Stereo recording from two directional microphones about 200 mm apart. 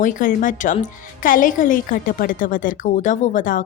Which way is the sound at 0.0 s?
40° left (ahead or behind).